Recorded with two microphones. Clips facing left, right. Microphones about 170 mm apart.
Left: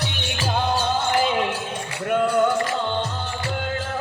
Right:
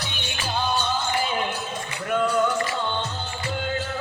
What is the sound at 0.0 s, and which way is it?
Music, 70° left (ahead or behind).